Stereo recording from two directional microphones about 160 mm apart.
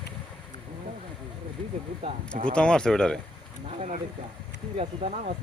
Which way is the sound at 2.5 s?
5° left (ahead or behind).